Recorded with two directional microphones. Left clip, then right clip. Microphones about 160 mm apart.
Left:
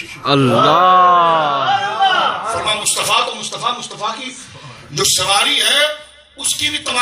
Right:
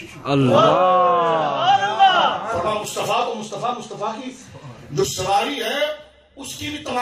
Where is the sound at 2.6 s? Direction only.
50° right (ahead or behind).